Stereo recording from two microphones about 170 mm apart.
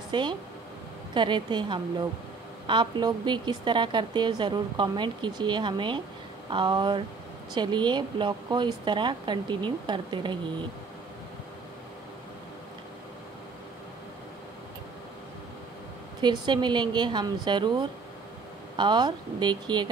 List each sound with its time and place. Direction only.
0.1 s a woman's voice: 25° right (ahead or behind)
16.2 s a woman's voice: 25° right (ahead or behind)